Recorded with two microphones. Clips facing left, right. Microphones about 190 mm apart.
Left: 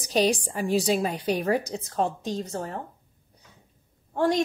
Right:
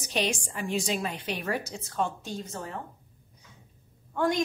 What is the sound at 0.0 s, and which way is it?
A woman's voice, 35° left (ahead or behind).